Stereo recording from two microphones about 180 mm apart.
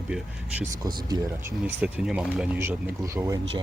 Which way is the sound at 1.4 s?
10° right (ahead or behind).